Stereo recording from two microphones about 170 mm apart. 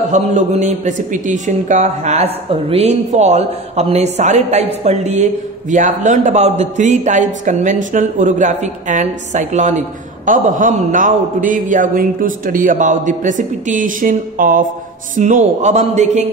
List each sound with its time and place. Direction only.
0.1 s speech: 45° right (ahead or behind)